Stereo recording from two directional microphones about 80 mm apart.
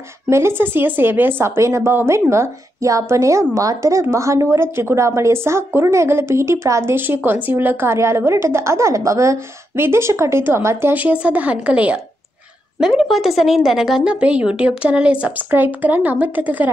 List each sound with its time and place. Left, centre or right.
0.3 s speech: right
11.0 s speech: centre
12.8 s speech: centre; by 16.7 s right